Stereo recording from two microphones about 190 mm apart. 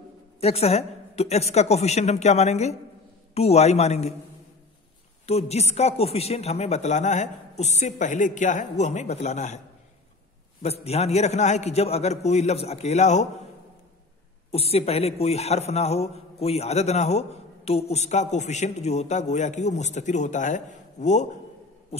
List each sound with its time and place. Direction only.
0.4 s a man's voice: 35° left (ahead or behind)
5.2 s a man's voice: 35° left (ahead or behind)
10.6 s a man's voice: 30° left (ahead or behind)
14.5 s a man's voice: 30° left (ahead or behind)